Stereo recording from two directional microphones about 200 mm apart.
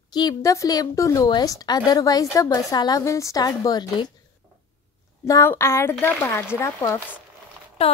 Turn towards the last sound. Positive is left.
turn(degrees=30)  # may be behind; listen again after turning